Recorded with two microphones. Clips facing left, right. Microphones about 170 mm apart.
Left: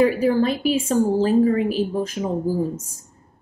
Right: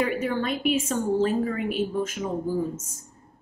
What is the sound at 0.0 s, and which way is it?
Speech, 35° left (ahead or behind).